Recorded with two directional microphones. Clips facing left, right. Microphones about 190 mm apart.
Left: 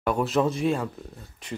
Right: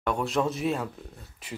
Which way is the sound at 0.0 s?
5° left (ahead or behind).